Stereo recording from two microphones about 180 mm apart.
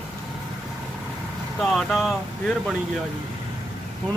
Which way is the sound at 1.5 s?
Centre (ahead or behind).